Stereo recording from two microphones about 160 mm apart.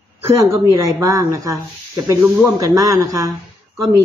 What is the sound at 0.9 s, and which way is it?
A child's voice, 20° right (ahead or behind).